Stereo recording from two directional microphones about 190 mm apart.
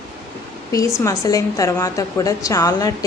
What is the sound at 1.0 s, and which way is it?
Speech, 20° left (ahead or behind).